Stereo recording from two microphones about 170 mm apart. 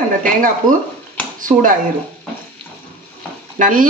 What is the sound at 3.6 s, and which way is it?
Speech, 55° right (ahead or behind).